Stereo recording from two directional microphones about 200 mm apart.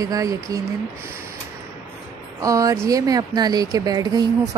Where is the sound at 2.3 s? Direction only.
15° right (ahead or behind).